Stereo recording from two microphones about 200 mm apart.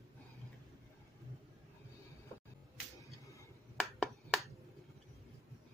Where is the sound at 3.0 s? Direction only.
15° left (ahead or behind).